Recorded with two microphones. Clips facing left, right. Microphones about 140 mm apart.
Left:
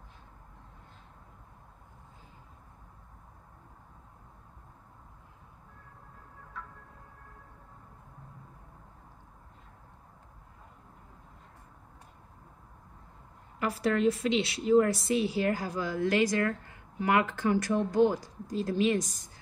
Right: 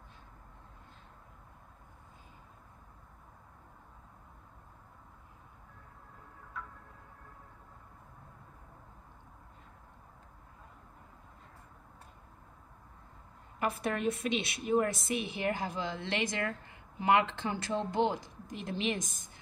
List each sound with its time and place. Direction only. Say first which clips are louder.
13.6 s a woman's voice: left 5 dB; 20° right (ahead or behind)
19.0 s a woman's voice: left 2 dB; 50° right (ahead or behind)